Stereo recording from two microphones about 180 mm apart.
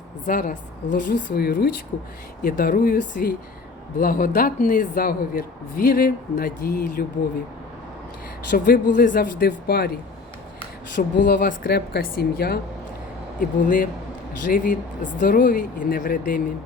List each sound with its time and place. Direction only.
0.3 s speech: 45° left (ahead or behind)
0.9 s speech: 75° left (ahead or behind); by 7.0 s 55° left (ahead or behind)
8.4 s speech: 55° left (ahead or behind)
11.0 s a woman's voice: 50° left (ahead or behind)
13.4 s speech: 50° left (ahead or behind)